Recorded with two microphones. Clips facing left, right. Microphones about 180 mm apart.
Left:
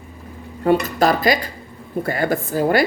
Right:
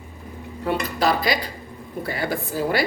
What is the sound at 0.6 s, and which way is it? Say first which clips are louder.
Speech: left 6 dB; 50° left (ahead or behind).